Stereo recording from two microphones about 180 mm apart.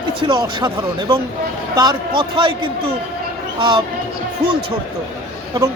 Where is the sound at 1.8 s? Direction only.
25° right (ahead or behind).